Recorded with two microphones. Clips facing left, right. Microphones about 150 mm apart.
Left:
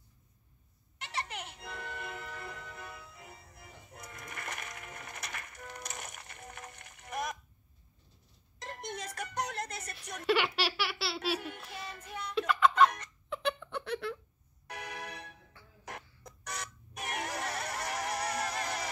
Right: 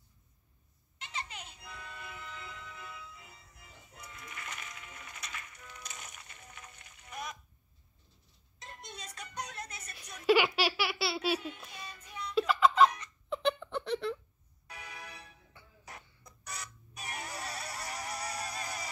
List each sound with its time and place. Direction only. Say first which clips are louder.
0.9 s music: left 4 dB; 65° left (ahead or behind)
8.5 s music: left 7 dB; 65° left (ahead or behind)
10.2 s baby laughter: right 3 dB; 5° right (ahead or behind)
11.3 s child singing: right 1 dB; 60° left (ahead or behind)
11.7 s music: left 4 dB; 55° left (ahead or behind)
12.4 s music: right 1 dB; 5° right (ahead or behind)
13.3 s giggle: right 3 dB; centre (ahead or behind)
14.7 s music: left 6 dB; 70° left (ahead or behind)
16.5 s music: left 4 dB; 60° left (ahead or behind)